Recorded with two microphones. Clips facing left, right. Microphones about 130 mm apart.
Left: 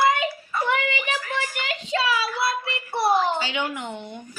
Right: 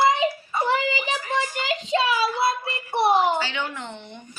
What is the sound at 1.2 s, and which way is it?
Child singing, 30° right (ahead or behind).